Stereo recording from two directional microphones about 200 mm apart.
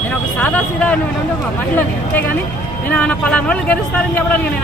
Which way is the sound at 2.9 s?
5° left (ahead or behind).